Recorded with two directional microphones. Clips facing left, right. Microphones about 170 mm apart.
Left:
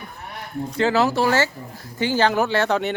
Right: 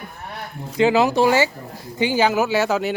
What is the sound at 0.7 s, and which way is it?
Speech, 15° right (ahead or behind).